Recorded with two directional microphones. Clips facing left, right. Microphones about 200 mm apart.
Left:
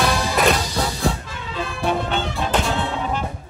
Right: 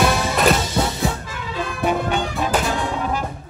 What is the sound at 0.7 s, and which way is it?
Music, 25° right (ahead or behind).